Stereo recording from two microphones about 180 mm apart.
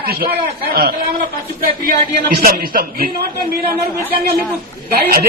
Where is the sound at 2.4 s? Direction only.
55° right (ahead or behind).